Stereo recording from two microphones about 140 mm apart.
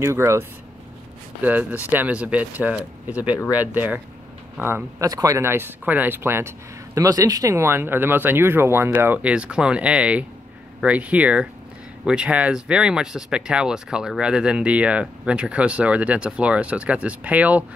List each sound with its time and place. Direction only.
0.0 s speech: 20° right (ahead or behind)